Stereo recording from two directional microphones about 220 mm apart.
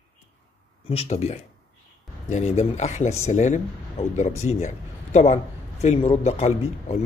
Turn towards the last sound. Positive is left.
turn(degrees=30)  # may be behind; listen again after turning